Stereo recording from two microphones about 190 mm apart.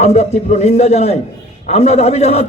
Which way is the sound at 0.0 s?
35° left (ahead or behind).